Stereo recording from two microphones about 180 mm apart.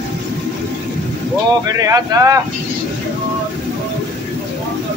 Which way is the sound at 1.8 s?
20° right (ahead or behind).